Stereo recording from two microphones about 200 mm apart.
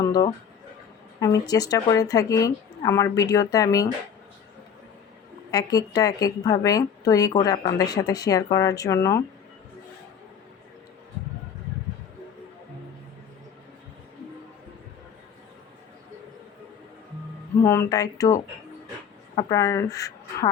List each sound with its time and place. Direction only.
0.0 s a woman's voice: 20° left (ahead or behind)
5.5 s a woman's voice: 20° left (ahead or behind)
17.6 s a woman's voice: 15° left (ahead or behind)
19.4 s a woman's voice: 15° left (ahead or behind)